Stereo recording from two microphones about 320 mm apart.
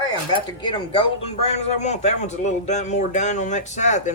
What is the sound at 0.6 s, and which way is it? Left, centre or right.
Speech, centre.